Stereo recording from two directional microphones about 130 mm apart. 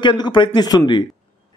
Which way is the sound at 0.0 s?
35° left (ahead or behind).